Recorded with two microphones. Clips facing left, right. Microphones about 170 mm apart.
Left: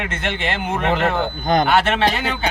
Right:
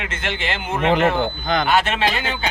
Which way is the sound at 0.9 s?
15° right (ahead or behind).